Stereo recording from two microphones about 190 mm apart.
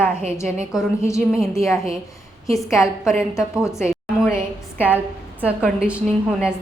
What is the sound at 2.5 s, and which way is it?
Speech, 15° left (ahead or behind).